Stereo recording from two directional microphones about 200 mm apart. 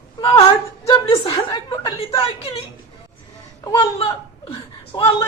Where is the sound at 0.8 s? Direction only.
20° left (ahead or behind).